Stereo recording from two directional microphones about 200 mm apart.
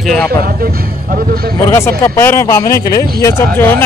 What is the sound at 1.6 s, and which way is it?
Speech, 15° left (ahead or behind).